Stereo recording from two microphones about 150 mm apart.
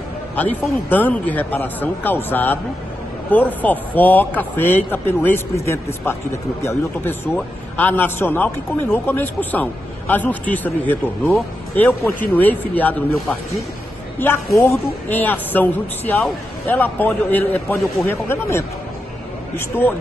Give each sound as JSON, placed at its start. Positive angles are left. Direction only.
{"t": 0.4, "sound": "a man's voice", "side_deg": 10}
{"t": 14.2, "sound": "a man's voice", "side_deg": 15}